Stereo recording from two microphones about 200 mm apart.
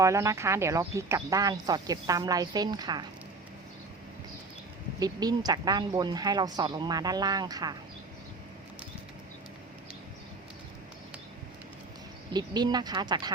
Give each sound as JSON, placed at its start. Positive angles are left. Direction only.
{"t": 0.0, "sound": "speech", "side_deg": -15}
{"t": 4.9, "sound": "speech", "side_deg": -20}
{"t": 12.3, "sound": "speech", "side_deg": -20}